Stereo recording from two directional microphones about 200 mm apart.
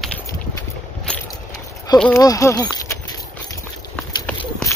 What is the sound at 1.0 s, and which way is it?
Vehicle, 5° left (ahead or behind).